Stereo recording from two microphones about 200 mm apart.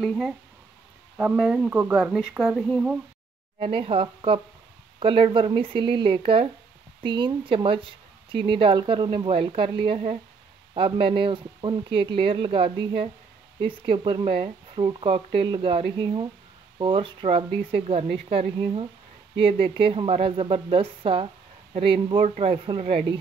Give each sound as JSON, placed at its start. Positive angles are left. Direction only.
{"t": 0.0, "sound": "speech", "side_deg": 0}
{"t": 3.5, "sound": "speech", "side_deg": -30}